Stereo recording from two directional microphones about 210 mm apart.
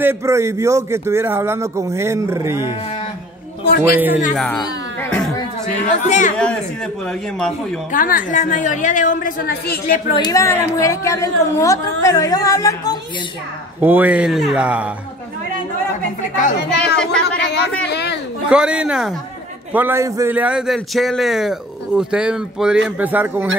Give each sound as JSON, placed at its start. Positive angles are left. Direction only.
{"t": 0.0, "sound": "speech", "side_deg": -10}
{"t": 3.6, "sound": "a man's voice", "side_deg": 45}
{"t": 5.7, "sound": "a woman's voice", "side_deg": 35}
{"t": 6.3, "sound": "a man's voice", "side_deg": 5}
{"t": 7.9, "sound": "a woman's voice", "side_deg": 40}
{"t": 10.1, "sound": "a woman's voice", "side_deg": 15}
{"t": 13.7, "sound": "speech", "side_deg": -10}
{"t": 16.7, "sound": "a man's voice", "side_deg": 5}
{"t": 17.4, "sound": "a man's voice", "side_deg": 55}
{"t": 17.8, "sound": "a sound", "side_deg": 55}
{"t": 18.5, "sound": "a man's voice", "side_deg": -5}